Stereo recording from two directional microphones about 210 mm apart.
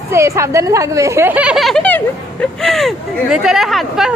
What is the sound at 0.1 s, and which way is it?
Speech, 15° right (ahead or behind).